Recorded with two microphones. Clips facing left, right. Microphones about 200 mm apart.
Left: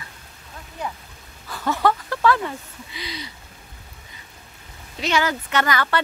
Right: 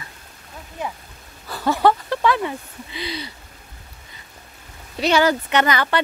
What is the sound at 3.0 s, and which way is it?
Speech, 30° right (ahead or behind).